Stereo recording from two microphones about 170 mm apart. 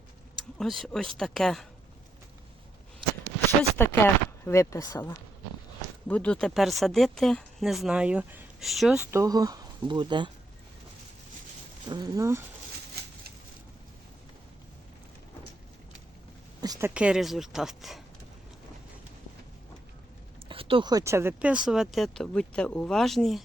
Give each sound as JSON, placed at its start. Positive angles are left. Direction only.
{"t": 0.6, "sound": "speech", "side_deg": 0}
{"t": 3.8, "sound": "speech", "side_deg": 15}
{"t": 6.1, "sound": "speech", "side_deg": 10}
{"t": 9.1, "sound": "speech", "side_deg": -20}
{"t": 11.9, "sound": "speech", "side_deg": -25}
{"t": 16.6, "sound": "a sound", "side_deg": -20}
{"t": 16.9, "sound": "speech", "side_deg": -5}
{"t": 20.5, "sound": "speech", "side_deg": -30}